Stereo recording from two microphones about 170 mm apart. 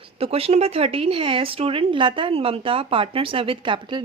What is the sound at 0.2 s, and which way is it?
A woman's voice, 35° right (ahead or behind).